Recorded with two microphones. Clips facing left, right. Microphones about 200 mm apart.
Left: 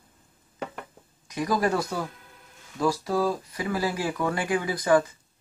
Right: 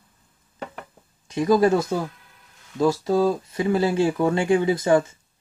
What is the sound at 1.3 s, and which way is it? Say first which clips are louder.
Speech: right 7 dB; 25° right (ahead or behind).